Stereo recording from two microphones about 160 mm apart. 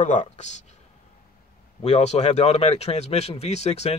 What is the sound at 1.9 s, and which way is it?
Speech, 45° left (ahead or behind).